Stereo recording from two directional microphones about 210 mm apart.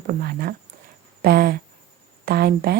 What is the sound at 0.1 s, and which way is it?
Speech, 45° right (ahead or behind).